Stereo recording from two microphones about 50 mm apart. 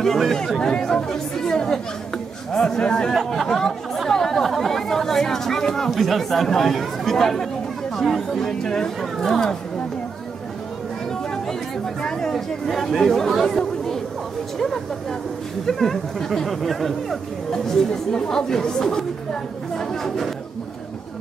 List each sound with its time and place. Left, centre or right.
0.0 s speech: centre
12.0 s speech: centre
15.6 s speech: centre